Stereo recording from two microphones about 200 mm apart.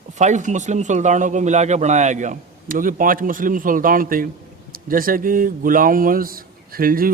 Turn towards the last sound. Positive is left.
turn(degrees=-45)  # may be behind; listen again after turning